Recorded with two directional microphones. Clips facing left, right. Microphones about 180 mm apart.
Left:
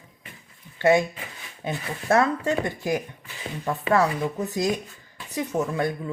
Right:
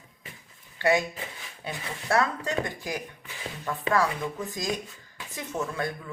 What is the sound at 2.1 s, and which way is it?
Speech, 20° left (ahead or behind).